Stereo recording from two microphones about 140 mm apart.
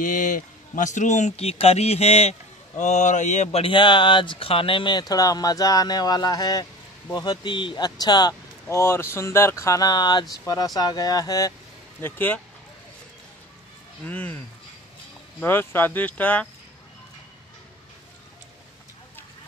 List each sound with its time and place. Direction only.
0.0 s a man's voice: 65° left (ahead or behind); by 2.3 s 45° left (ahead or behind)
2.8 s speech: 60° left (ahead or behind)
3.6 s speech: 35° left (ahead or behind)
12.0 s speech: 15° left (ahead or behind)
14.0 s speech: 10° left (ahead or behind)
15.4 s speech: 15° left (ahead or behind)